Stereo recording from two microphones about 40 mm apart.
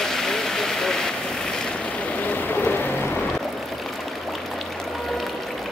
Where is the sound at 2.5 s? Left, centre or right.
Left.